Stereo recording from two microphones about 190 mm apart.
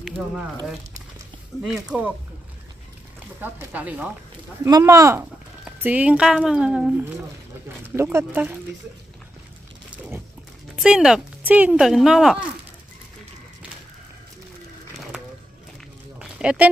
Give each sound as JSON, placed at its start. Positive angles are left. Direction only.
{"t": 1.9, "sound": "speech", "side_deg": -5}
{"t": 3.3, "sound": "speech", "side_deg": -10}
{"t": 4.6, "sound": "speech", "side_deg": -20}
{"t": 9.8, "sound": "a sound", "side_deg": -5}
{"t": 10.8, "sound": "speech", "side_deg": -5}
{"t": 16.2, "sound": "a sound", "side_deg": -5}